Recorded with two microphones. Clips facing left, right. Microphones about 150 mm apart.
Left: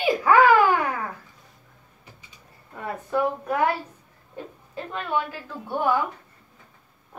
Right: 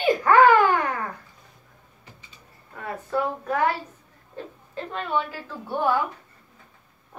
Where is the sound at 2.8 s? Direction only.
15° left (ahead or behind).